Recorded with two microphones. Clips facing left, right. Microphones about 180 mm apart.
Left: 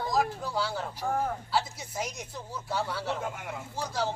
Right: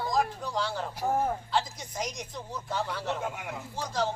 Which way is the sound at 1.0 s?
20° right (ahead or behind).